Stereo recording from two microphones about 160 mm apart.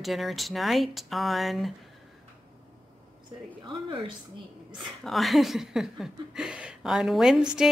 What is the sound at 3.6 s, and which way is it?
Speech, 30° right (ahead or behind).